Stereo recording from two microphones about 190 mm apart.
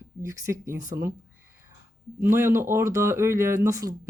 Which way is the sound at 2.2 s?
10° right (ahead or behind).